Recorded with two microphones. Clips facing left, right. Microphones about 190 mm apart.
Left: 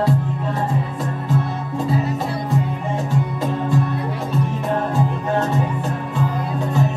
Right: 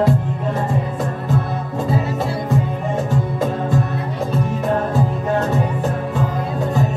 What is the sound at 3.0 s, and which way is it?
Music, 45° right (ahead or behind).